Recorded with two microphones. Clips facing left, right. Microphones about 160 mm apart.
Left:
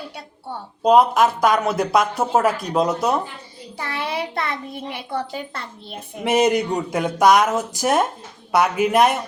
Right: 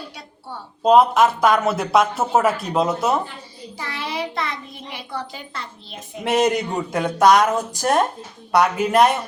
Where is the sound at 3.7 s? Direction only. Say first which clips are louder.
Left 2 dB; 55° left (ahead or behind).